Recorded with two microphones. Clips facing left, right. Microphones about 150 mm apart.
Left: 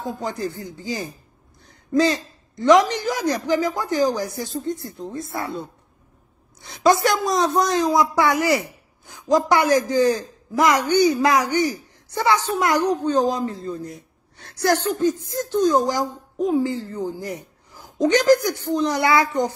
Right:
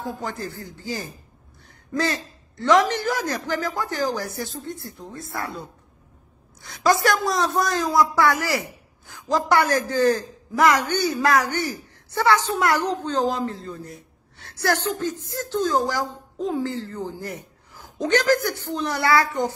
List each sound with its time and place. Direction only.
0.0 s a woman's voice: 20° left (ahead or behind)